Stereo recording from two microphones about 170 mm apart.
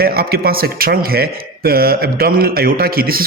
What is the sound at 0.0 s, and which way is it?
A man's voice, 65° right (ahead or behind).